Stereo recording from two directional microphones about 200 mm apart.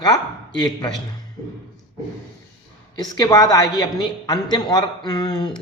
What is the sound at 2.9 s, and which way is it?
Speech, 20° left (ahead or behind).